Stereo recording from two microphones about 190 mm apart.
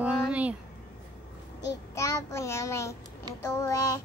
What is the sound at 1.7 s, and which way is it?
Child singing, 15° left (ahead or behind).